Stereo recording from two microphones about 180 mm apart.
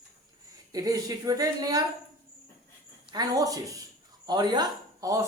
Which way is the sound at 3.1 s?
20° right (ahead or behind).